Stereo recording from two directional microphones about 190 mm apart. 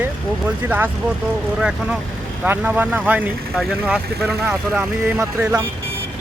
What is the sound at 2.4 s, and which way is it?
Speech, 10° right (ahead or behind).